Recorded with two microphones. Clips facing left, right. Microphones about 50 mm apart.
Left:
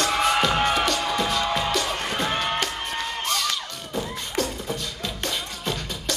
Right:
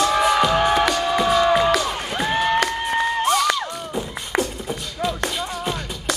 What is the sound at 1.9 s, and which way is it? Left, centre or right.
Music, centre.